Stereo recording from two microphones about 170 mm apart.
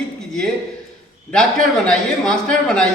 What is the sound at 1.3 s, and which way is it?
Speech, 5° left (ahead or behind).